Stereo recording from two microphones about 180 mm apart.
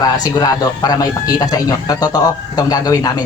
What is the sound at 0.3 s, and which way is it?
A man's voice, 20° left (ahead or behind).